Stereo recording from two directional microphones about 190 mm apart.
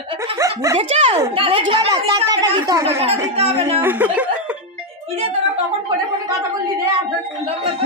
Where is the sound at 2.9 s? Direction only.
35° right (ahead or behind).